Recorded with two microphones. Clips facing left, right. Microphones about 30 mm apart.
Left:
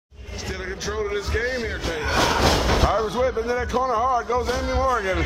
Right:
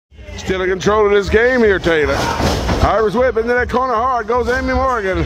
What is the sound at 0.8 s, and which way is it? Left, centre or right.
Speech, right.